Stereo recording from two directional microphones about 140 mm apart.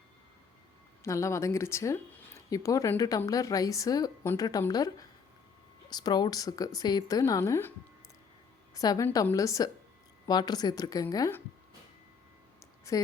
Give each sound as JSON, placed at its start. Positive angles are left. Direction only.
{"t": 1.0, "sound": "speech", "side_deg": 20}
{"t": 8.7, "sound": "a woman's voice", "side_deg": 25}
{"t": 12.9, "sound": "a woman's voice", "side_deg": 25}